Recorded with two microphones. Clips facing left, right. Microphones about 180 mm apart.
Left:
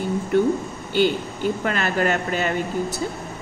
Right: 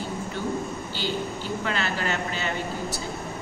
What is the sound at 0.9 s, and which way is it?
Speech, 55° left (ahead or behind).